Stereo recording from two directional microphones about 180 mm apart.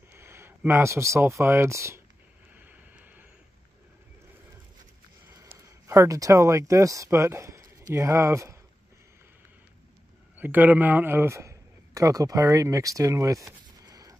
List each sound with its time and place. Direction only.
0.1 s speech: 15° right (ahead or behind)
2.5 s vehicle: 10° right (ahead or behind)
5.3 s speech: 15° right (ahead or behind)
10.3 s a man's voice: 10° right (ahead or behind)
13.7 s a sound: 20° right (ahead or behind)